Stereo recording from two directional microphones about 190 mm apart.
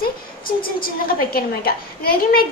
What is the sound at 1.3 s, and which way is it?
A woman's voice, 50° left (ahead or behind).